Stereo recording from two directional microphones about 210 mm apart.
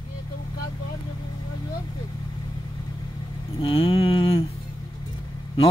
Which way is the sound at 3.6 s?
25° left (ahead or behind).